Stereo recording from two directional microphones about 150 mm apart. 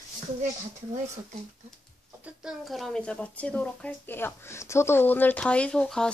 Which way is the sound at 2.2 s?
5° right (ahead or behind).